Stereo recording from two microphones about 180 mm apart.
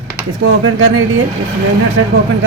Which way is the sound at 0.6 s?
90° right.